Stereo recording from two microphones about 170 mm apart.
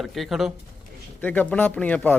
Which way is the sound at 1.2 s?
10° left (ahead or behind).